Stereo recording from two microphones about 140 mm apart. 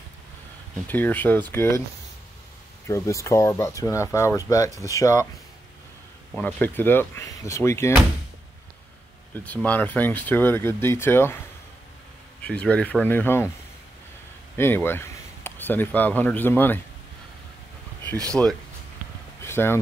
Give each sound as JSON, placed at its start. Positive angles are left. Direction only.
{"t": 0.8, "sound": "speech", "side_deg": 15}
{"t": 2.9, "sound": "speech", "side_deg": 20}
{"t": 6.3, "sound": "speech", "side_deg": 10}
{"t": 9.3, "sound": "speech", "side_deg": 10}
{"t": 12.4, "sound": "speech", "side_deg": 10}
{"t": 14.6, "sound": "speech", "side_deg": 15}
{"t": 18.3, "sound": "speech", "side_deg": 5}
{"t": 19.4, "sound": "speech", "side_deg": 15}